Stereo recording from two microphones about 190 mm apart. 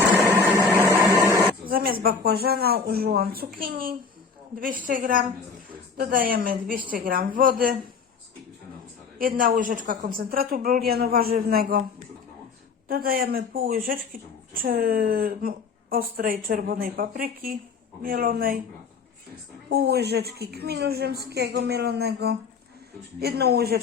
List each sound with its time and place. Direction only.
0.6 s a sound: 10° right (ahead or behind)
1.6 s a woman's voice: 50° right (ahead or behind)
9.1 s a woman's voice: 50° right (ahead or behind)
12.9 s a woman's voice: 50° right (ahead or behind)
19.7 s a woman's voice: 60° right (ahead or behind)